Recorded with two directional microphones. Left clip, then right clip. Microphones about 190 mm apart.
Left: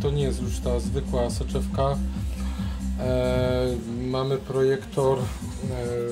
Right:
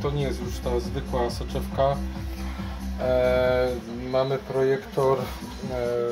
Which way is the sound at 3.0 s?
25° left (ahead or behind).